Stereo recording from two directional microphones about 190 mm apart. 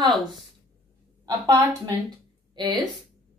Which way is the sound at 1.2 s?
20° right (ahead or behind).